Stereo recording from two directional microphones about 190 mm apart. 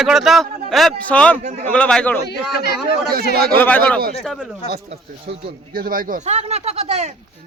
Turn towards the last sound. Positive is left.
turn(degrees=-35)  # may be behind; listen again after turning